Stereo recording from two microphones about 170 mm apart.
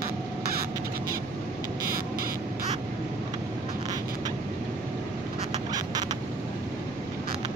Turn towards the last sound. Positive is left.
turn(degrees=-25)  # may be behind; listen again after turning